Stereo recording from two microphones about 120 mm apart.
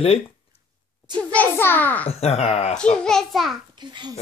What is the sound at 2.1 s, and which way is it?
Speech, 60° left (ahead or behind).